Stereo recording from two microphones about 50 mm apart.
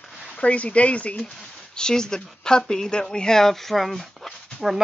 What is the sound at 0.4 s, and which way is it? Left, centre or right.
Speech, left.